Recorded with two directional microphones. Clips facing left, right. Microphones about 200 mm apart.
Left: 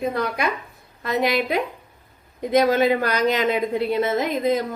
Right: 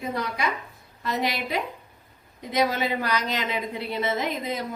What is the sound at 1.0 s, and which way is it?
Speech, 55° left (ahead or behind).